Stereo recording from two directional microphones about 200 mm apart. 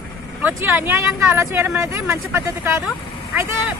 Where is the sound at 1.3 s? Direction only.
10° right (ahead or behind).